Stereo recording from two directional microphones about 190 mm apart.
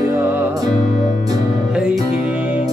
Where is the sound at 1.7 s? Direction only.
5° right (ahead or behind).